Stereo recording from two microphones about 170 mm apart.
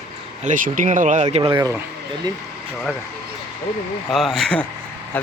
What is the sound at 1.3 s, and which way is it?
Speech, 35° right (ahead or behind).